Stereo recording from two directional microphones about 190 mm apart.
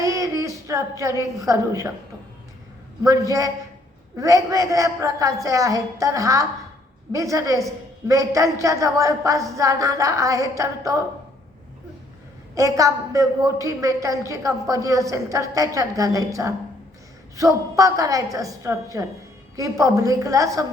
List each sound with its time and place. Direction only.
0.0 s a sound: 15° right (ahead or behind)
3.0 s a woman's voice: 20° right (ahead or behind)
12.5 s a woman's voice: 15° right (ahead or behind)